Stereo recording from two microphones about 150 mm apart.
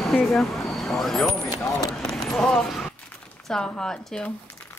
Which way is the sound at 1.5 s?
25° left (ahead or behind).